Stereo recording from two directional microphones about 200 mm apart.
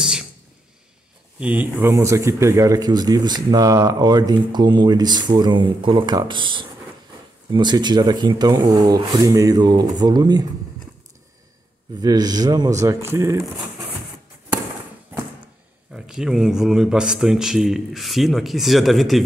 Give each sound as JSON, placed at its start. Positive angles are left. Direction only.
{"t": 0.0, "sound": "a sound", "side_deg": -5}
{"t": 1.4, "sound": "speech", "side_deg": -10}
{"t": 12.0, "sound": "speech", "side_deg": -20}
{"t": 15.9, "sound": "speech", "side_deg": -5}